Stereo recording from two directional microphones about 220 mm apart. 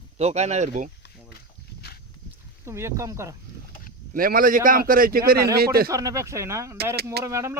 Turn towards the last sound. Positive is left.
turn(degrees=-15)  # may be behind; listen again after turning